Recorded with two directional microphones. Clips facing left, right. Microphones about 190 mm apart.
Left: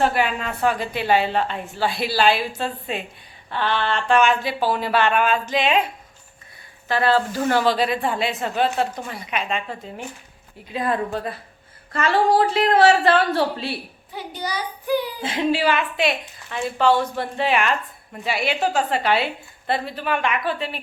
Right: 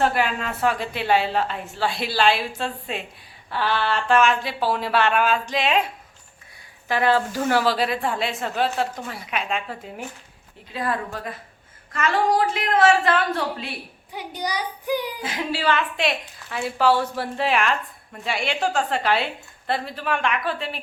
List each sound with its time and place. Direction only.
0.0 s a woman's voice: centre (ahead or behind)
6.8 s a woman's voice: 15° right (ahead or behind)
10.7 s a woman's voice: 20° left (ahead or behind)
14.1 s child singing: 15° right (ahead or behind)
15.2 s a woman's voice: 25° left (ahead or behind)
15.6 s a woman's voice: 10° left (ahead or behind)